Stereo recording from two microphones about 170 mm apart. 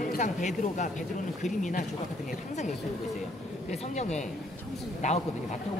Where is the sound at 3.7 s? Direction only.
40° left (ahead or behind).